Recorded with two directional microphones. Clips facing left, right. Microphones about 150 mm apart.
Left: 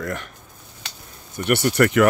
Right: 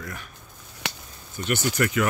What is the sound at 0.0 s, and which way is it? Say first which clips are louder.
Speech: left 9 dB; 80° left.